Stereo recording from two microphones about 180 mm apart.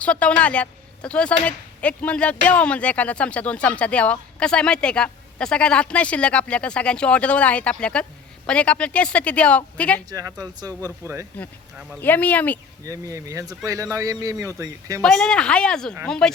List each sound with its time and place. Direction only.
0.0 s a woman's voice: 5° left (ahead or behind)
10.1 s speech: 20° right (ahead or behind)
12.0 s speech: 10° left (ahead or behind)
12.8 s speech: 20° right (ahead or behind)
15.0 s speech: centre (ahead or behind)